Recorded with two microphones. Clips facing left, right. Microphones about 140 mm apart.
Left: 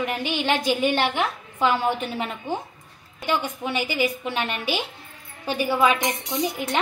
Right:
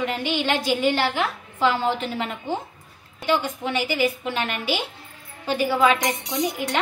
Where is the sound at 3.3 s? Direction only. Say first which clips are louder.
Right 2 dB; 15° left (ahead or behind).